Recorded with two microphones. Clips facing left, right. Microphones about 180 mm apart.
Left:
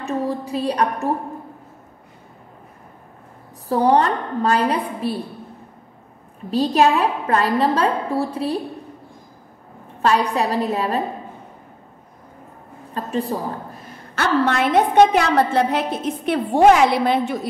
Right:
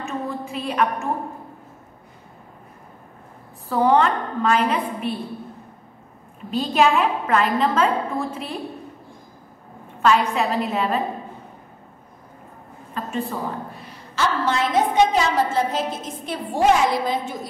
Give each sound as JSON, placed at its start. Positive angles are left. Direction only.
{"t": 0.0, "sound": "a sound", "side_deg": 35}
{"t": 1.0, "sound": "a woman's voice", "side_deg": 35}
{"t": 3.6, "sound": "a woman's voice", "side_deg": 40}
{"t": 6.5, "sound": "a woman's voice", "side_deg": 35}
{"t": 10.3, "sound": "a woman's voice", "side_deg": 35}
{"t": 12.9, "sound": "a woman's voice", "side_deg": 35}